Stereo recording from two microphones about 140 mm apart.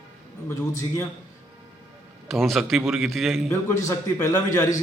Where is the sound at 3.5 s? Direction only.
20° left (ahead or behind).